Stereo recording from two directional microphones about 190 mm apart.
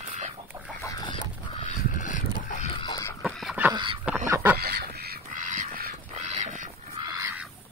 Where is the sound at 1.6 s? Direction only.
40° left (ahead or behind).